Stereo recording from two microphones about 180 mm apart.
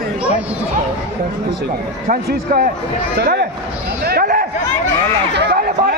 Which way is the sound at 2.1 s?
50° right (ahead or behind).